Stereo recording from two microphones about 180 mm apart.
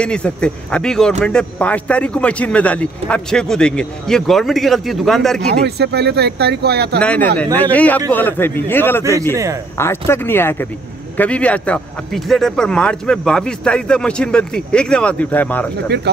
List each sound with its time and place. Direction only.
0.0 s speech: 5° left (ahead or behind)
5.4 s speech: 65° right (ahead or behind)
7.0 s a man's voice: 5° left (ahead or behind)
15.9 s speech: 65° right (ahead or behind)